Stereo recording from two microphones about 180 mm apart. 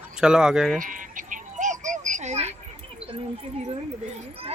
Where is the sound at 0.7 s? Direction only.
45° right (ahead or behind).